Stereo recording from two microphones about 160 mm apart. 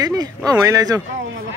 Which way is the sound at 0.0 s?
25° right (ahead or behind).